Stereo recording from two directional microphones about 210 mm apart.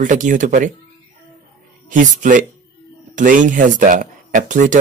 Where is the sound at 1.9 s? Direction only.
35° right (ahead or behind).